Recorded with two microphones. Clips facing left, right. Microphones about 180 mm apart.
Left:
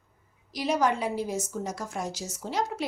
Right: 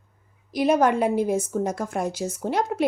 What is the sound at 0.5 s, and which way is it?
Speech, 55° right (ahead or behind).